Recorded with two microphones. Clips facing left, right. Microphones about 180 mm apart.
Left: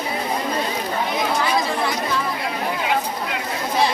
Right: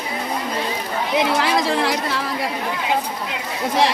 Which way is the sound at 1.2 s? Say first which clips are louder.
Right 4 dB; 80° right.